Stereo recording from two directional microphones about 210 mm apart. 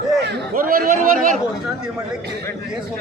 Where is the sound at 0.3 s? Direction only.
45° right (ahead or behind).